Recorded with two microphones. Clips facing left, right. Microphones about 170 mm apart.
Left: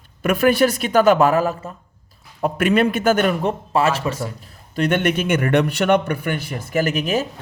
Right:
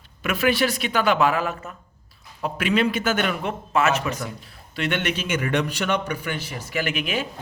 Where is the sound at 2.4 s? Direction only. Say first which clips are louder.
Left 5 dB; 50° left (ahead or behind); by 4.2 s 30° left (ahead or behind).